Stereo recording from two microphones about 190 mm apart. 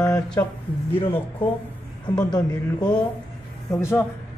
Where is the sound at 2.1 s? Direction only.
20° left (ahead or behind).